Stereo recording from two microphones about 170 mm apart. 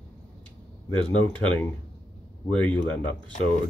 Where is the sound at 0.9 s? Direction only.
5° left (ahead or behind).